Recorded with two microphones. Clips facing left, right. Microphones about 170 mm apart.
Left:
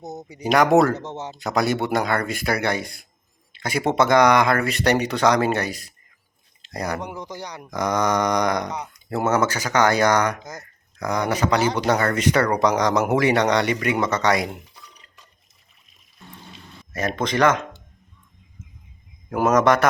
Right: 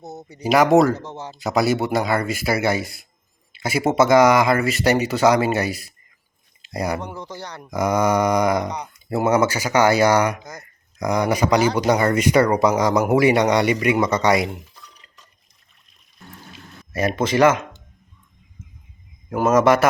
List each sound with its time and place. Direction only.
0.0 s a sound: 15° left (ahead or behind)
0.4 s speech: 5° right (ahead or behind)
0.9 s speech: 20° left (ahead or behind)
1.3 s speech: 5° right (ahead or behind)
7.0 s speech: 15° left (ahead or behind)
7.7 s speech: 10° right (ahead or behind)
9.0 s speech: 10° right (ahead or behind)
16.9 s speech: 10° right (ahead or behind)
19.3 s speech: centre (ahead or behind)